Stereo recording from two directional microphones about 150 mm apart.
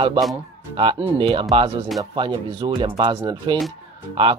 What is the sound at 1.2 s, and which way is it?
Speech, 35° right (ahead or behind).